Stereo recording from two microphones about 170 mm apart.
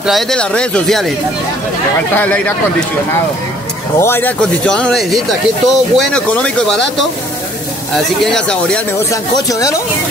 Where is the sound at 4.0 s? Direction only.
15° left (ahead or behind).